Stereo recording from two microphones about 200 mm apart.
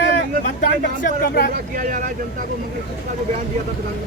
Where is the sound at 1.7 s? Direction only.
40° right (ahead or behind).